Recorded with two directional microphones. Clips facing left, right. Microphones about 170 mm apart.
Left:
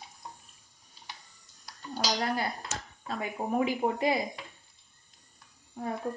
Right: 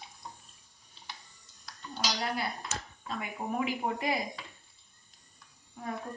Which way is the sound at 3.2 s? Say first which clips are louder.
Left 5 dB; 30° left (ahead or behind).